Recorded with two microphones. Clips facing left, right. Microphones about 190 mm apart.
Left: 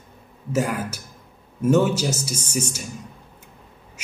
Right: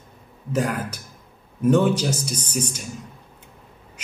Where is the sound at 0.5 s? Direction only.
5° left (ahead or behind).